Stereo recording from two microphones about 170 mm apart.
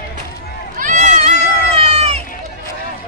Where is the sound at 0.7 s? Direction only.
45° right (ahead or behind).